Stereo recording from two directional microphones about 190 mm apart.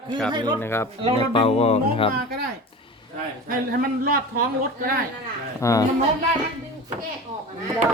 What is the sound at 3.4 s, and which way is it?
Speech, 50° right (ahead or behind).